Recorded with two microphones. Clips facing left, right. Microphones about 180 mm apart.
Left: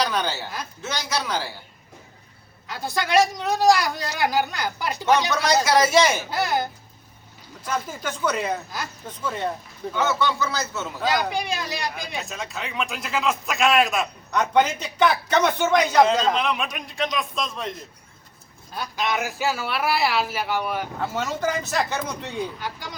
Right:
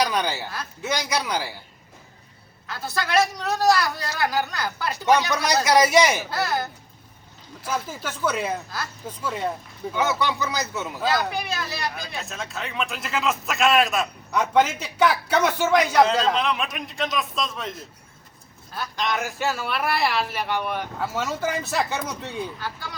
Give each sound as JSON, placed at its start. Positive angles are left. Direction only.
{"t": 0.0, "sound": "speech", "side_deg": -15}
{"t": 2.6, "sound": "speech", "side_deg": 15}
{"t": 5.6, "sound": "speech", "side_deg": -15}
{"t": 6.3, "sound": "speech", "side_deg": 15}
{"t": 7.6, "sound": "speech", "side_deg": -5}
{"t": 11.0, "sound": "speech", "side_deg": 15}
{"t": 12.1, "sound": "speech", "side_deg": 0}
{"t": 18.9, "sound": "speech", "side_deg": 5}
{"t": 22.6, "sound": "speech", "side_deg": 15}